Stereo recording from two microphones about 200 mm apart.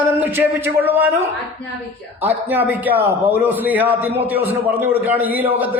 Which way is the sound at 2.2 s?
10° right (ahead or behind).